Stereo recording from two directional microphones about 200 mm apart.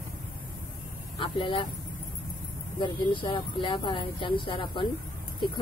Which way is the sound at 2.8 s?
25° left (ahead or behind).